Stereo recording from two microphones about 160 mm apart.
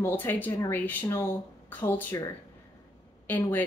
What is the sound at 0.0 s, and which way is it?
Speech, 10° left (ahead or behind).